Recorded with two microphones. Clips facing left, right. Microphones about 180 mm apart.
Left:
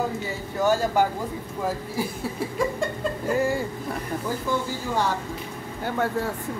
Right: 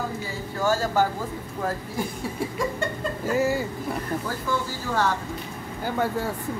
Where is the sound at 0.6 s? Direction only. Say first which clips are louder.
Left 1 dB; 15° left (ahead or behind).